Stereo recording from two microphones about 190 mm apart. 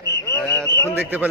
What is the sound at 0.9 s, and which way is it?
Speech, 10° right (ahead or behind).